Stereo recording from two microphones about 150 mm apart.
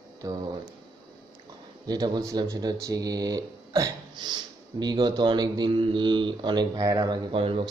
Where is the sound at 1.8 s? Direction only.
25° right (ahead or behind).